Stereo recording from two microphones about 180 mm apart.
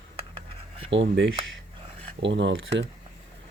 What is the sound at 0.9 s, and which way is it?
Speech, 90° right.